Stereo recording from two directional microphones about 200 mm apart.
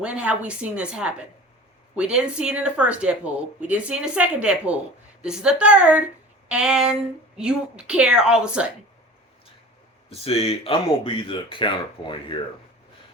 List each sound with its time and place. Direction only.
0.0 s speech: 5° right (ahead or behind)
10.1 s speech: 30° left (ahead or behind)